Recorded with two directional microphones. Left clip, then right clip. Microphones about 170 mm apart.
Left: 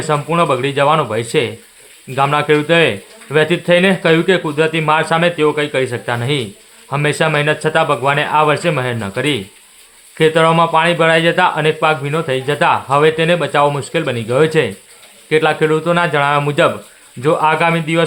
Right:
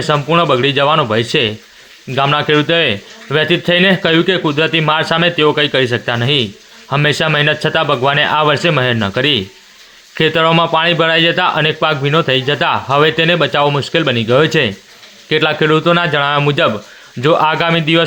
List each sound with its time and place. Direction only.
0.0 s a man's voice: 15° right (ahead or behind)